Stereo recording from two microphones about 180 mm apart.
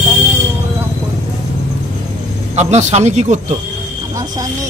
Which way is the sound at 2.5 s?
40° right (ahead or behind).